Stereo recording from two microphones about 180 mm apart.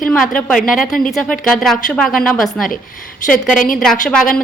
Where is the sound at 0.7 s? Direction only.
50° left (ahead or behind).